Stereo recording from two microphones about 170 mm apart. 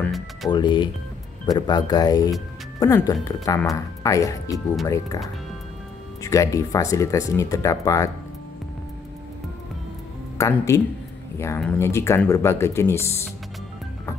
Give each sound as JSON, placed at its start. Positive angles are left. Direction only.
{"t": 0.0, "sound": "music", "side_deg": 0}
{"t": 0.5, "sound": "speech", "side_deg": 30}
{"t": 6.2, "sound": "speech", "side_deg": 20}
{"t": 10.3, "sound": "speech", "side_deg": 20}